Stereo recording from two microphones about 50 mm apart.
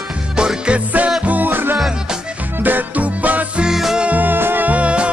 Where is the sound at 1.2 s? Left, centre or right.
Right.